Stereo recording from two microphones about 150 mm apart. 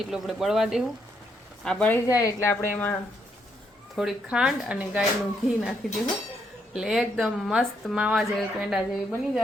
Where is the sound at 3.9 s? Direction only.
5° right (ahead or behind).